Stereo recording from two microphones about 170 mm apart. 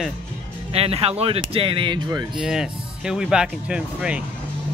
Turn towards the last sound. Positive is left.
turn(degrees=-5)  # may be behind; listen again after turning